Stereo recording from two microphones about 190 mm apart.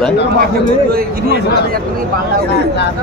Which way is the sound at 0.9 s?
50° right (ahead or behind).